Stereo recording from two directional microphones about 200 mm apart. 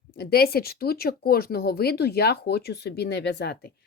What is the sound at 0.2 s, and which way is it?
Speech, 50° left (ahead or behind).